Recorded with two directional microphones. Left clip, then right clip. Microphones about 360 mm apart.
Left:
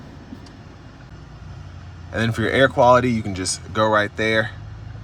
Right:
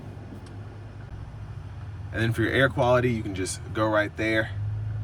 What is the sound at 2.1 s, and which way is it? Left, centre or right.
Speech, centre.